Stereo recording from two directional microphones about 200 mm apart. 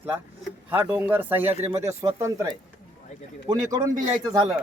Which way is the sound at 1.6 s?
30° right (ahead or behind).